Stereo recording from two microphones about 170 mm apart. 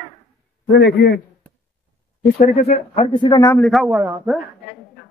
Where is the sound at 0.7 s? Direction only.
90° left; by 1.2 s 70° left (ahead or behind).